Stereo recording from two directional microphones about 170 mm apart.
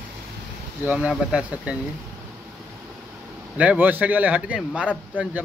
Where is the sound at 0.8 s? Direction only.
5° right (ahead or behind).